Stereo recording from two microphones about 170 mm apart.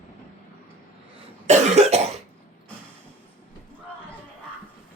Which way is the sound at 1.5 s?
40° right (ahead or behind).